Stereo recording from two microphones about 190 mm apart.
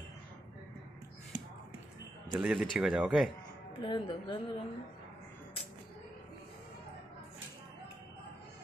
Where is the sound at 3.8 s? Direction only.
25° left (ahead or behind).